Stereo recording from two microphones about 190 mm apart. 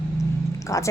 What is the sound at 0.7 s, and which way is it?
Speech, 15° left (ahead or behind).